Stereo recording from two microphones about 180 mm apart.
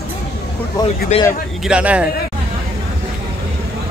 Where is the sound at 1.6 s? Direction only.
5° right (ahead or behind).